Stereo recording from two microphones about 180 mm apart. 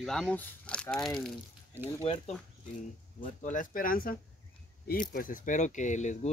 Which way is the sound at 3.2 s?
45° left (ahead or behind).